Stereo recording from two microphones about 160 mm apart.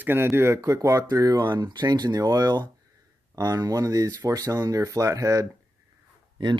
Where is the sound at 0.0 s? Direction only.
15° right (ahead or behind).